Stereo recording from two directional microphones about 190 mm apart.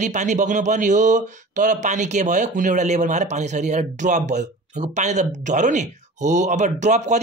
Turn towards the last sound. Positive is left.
turn(degrees=-40)  # may be behind; listen again after turning